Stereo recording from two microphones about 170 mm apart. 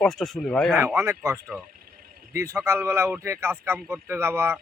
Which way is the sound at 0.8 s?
15° right (ahead or behind).